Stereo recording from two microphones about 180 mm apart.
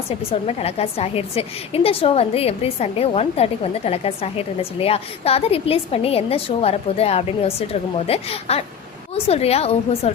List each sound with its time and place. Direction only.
0.2 s a woman's voice: 35° left (ahead or behind)